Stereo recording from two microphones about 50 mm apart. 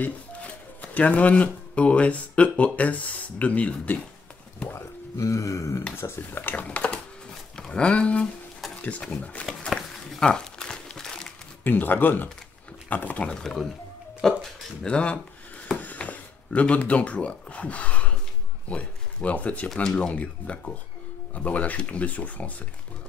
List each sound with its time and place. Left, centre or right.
0.0 s speech: left
4.7 s speech: left
5.9 s speech: left
6.4 s speech: left
7.5 s speech: centre
9.7 s a sound: centre
10.2 s crumpling: centre
11.6 s speech: left
13.2 s speech: centre
15.8 s speech: left
19.7 s speech: centre
20.0 s speech: left